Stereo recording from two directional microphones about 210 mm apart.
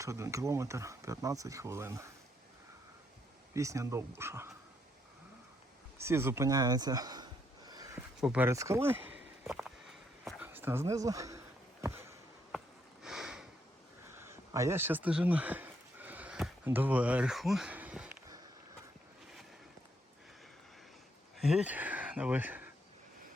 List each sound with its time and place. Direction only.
0.0 s speech: 15° right (ahead or behind)
3.5 s speech: 15° right (ahead or behind)
6.0 s a sound: 10° right (ahead or behind)
12.5 s sniff: centre (ahead or behind)
14.2 s a sound: 15° right (ahead or behind)
21.4 s speech: 5° right (ahead or behind)